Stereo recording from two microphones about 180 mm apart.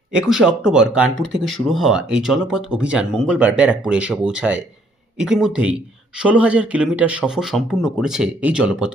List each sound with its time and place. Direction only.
0.1 s speech: 5° right (ahead or behind)